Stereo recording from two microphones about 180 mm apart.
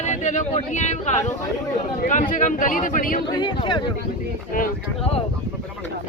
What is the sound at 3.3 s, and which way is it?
Speech, 25° left (ahead or behind).